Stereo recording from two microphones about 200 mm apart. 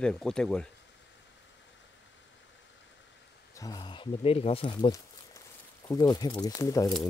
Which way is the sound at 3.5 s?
20° left (ahead or behind).